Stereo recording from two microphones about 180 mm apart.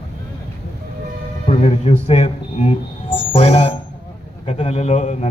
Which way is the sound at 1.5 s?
35° left (ahead or behind).